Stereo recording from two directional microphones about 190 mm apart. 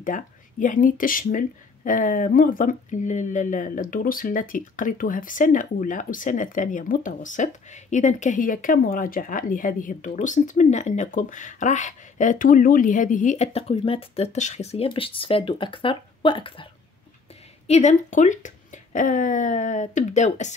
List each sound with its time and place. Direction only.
0.0 s speech: 45° left (ahead or behind); by 16.6 s 25° left (ahead or behind)
17.6 s speech: 35° left (ahead or behind)